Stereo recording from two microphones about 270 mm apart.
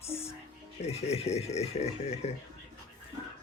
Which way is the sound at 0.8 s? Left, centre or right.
Left.